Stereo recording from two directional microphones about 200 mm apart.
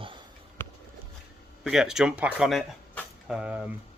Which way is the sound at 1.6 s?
Centre (ahead or behind).